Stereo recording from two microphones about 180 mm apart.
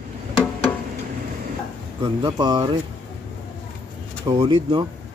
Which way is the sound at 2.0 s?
25° right (ahead or behind).